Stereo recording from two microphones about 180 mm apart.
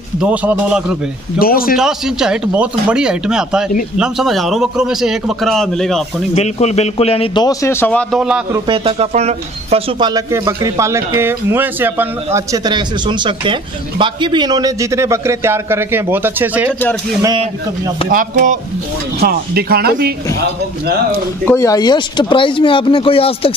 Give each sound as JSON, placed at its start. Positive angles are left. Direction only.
{"t": 0.2, "sound": "speech", "side_deg": -10}
{"t": 1.4, "sound": "a man's voice", "side_deg": 55}
{"t": 1.8, "sound": "a man's voice", "side_deg": -5}
{"t": 6.3, "sound": "a man's voice", "side_deg": 35}
{"t": 7.4, "sound": "a man's voice", "side_deg": 15}
{"t": 8.6, "sound": "speech", "side_deg": -30}
{"t": 18.1, "sound": "speech", "side_deg": -50}
{"t": 19.1, "sound": "speech", "side_deg": -60}
{"t": 21.5, "sound": "speech", "side_deg": 15}